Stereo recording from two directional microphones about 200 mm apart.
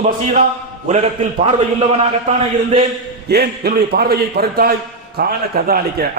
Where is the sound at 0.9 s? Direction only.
30° right (ahead or behind).